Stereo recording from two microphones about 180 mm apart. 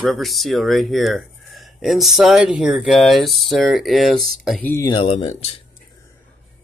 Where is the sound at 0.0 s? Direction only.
Centre (ahead or behind).